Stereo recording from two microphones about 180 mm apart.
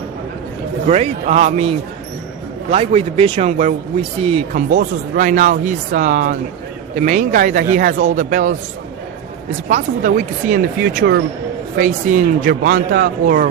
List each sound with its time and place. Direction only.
0.9 s a man's voice: 35° right (ahead or behind)
4.5 s speech: 45° right (ahead or behind)
9.6 s speech: 45° right (ahead or behind); by 11.2 s 60° right (ahead or behind)
11.8 s speech: 45° right (ahead or behind)